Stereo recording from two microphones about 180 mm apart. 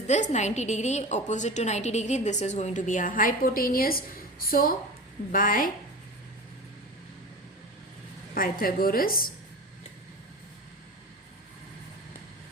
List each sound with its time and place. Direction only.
0.1 s a woman's voice: 40° left (ahead or behind)
8.4 s a woman's voice: 55° left (ahead or behind)